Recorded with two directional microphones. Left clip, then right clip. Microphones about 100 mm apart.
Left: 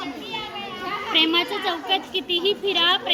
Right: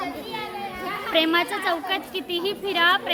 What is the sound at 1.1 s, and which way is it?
A woman's voice, 45° right (ahead or behind).